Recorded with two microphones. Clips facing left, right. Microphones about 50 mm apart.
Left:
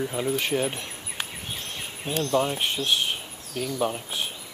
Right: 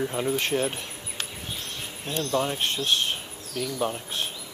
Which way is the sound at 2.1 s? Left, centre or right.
Centre.